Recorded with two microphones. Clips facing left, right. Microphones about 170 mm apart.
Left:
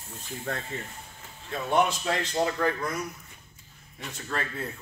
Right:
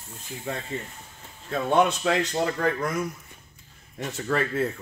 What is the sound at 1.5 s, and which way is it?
Speech, 65° right (ahead or behind).